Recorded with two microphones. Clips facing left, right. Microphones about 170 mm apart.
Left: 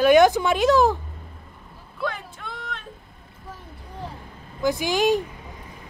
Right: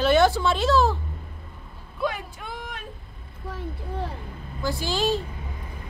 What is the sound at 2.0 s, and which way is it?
Vehicle, 15° right (ahead or behind).